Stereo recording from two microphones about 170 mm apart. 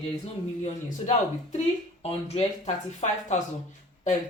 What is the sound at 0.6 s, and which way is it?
Speech, 45° left (ahead or behind).